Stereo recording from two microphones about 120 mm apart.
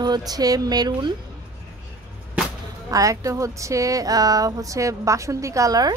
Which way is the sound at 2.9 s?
30° right (ahead or behind).